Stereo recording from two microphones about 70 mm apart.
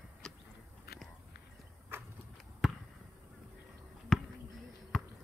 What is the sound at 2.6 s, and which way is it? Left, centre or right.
Basketball bounce, centre.